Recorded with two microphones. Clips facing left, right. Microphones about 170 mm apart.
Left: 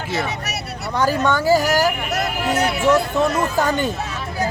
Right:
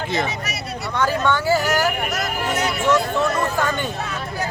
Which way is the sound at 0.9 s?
40° left (ahead or behind).